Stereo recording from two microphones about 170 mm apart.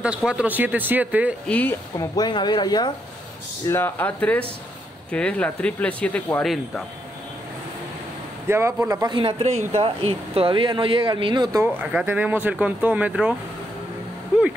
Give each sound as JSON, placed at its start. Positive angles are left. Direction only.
{"t": 0.0, "sound": "speech", "side_deg": -5}
{"t": 1.5, "sound": "speech", "side_deg": 10}
{"t": 2.0, "sound": "speech", "side_deg": 25}
{"t": 3.6, "sound": "speech", "side_deg": 15}
{"t": 8.5, "sound": "speech", "side_deg": -15}
{"t": 11.6, "sound": "speech", "side_deg": -10}